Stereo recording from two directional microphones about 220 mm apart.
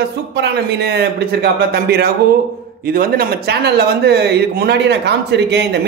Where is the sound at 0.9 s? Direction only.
45° right (ahead or behind).